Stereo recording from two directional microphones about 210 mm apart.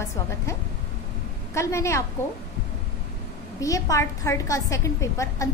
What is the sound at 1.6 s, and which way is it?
Speech, 15° left (ahead or behind).